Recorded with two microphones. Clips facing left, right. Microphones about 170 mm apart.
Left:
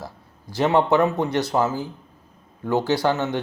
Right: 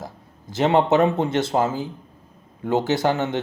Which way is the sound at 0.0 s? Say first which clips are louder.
Right 1 dB; 20° right (ahead or behind).